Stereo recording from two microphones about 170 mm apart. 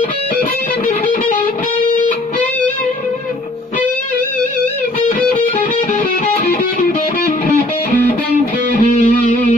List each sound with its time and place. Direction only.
8.7 s music: 45° left (ahead or behind)